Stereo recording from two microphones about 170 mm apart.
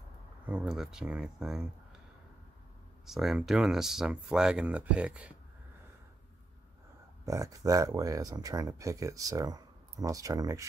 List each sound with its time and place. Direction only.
0.5 s speech: 5° right (ahead or behind)
3.1 s speech: centre (ahead or behind)
7.2 s speech: 20° right (ahead or behind)